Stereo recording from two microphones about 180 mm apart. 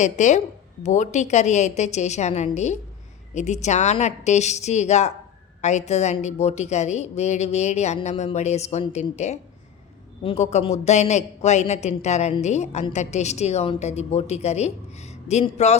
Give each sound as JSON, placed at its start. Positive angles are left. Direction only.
{"t": 0.0, "sound": "a woman's voice", "side_deg": 40}